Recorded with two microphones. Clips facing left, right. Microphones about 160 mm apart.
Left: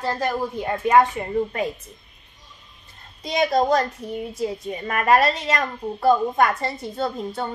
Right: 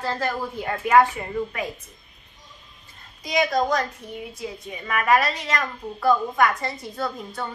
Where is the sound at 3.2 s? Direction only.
30° left (ahead or behind).